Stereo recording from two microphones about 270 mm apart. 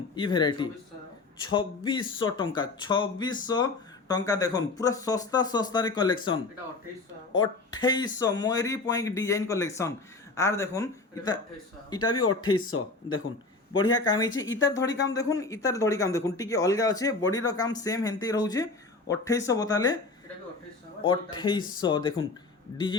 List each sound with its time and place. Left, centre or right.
0.2 s speech: centre
12.0 s speech: left
14.1 s speech: centre
21.3 s speech: centre